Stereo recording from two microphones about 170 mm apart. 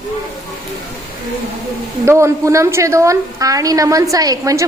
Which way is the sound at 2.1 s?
15° right (ahead or behind).